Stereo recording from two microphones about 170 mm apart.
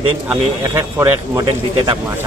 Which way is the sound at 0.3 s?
15° right (ahead or behind).